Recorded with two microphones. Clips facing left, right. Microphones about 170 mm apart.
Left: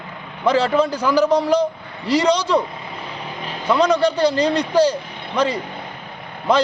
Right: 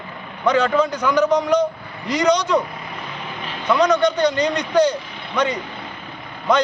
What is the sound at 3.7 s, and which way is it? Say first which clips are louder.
Speech: even; 30° left (ahead or behind).